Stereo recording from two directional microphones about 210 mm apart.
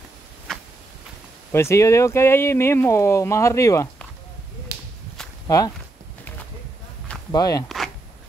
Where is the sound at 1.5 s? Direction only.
10° left (ahead or behind).